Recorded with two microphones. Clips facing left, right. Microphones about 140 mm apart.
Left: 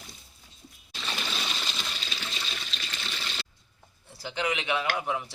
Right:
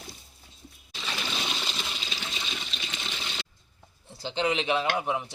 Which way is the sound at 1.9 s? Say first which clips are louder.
Right 1 dB; 20° right (ahead or behind).